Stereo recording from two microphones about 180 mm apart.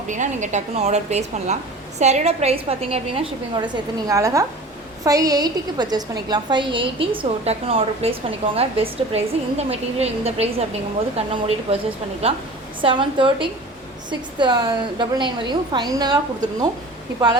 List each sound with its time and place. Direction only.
0.1 s a woman's voice: 40° right (ahead or behind); by 16.6 s 20° right (ahead or behind)